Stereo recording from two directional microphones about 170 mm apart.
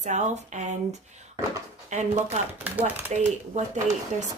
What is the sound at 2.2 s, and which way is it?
Speech, 10° right (ahead or behind).